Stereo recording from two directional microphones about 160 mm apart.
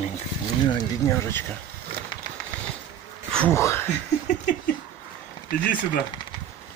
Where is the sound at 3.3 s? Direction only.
15° left (ahead or behind).